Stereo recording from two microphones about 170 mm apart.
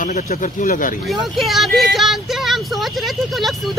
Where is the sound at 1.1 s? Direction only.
Centre (ahead or behind).